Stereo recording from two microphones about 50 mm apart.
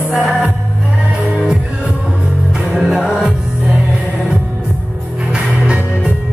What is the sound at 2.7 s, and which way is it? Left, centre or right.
Music, centre.